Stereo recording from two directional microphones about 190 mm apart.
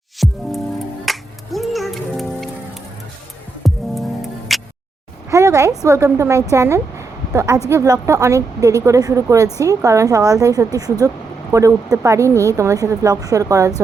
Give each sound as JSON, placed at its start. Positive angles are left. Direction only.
{"t": 0.2, "sound": "music", "side_deg": 0}
{"t": 3.6, "sound": "music", "side_deg": 0}
{"t": 5.3, "sound": "speech", "side_deg": -15}